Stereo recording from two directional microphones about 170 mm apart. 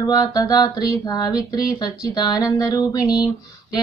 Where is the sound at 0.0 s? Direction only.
20° left (ahead or behind).